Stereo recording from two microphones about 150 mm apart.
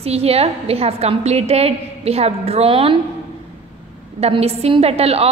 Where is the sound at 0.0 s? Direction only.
45° right (ahead or behind).